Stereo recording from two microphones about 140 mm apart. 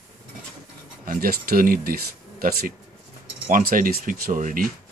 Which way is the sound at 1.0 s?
90° right.